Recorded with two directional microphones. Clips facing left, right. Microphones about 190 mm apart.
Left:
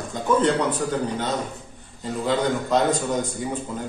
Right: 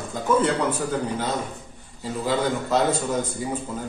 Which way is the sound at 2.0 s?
5° right (ahead or behind).